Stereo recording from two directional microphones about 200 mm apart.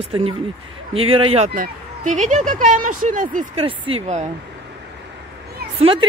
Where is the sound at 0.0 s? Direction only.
30° right (ahead or behind).